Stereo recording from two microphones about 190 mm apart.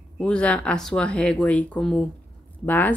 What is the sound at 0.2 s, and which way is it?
A woman's voice, 5° left (ahead or behind).